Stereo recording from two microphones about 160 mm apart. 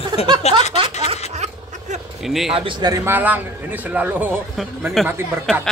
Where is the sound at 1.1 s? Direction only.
45° right (ahead or behind).